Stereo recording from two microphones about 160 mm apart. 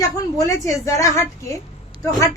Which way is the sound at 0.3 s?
20° left (ahead or behind).